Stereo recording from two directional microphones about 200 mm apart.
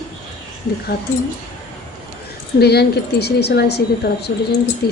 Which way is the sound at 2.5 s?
55° left (ahead or behind).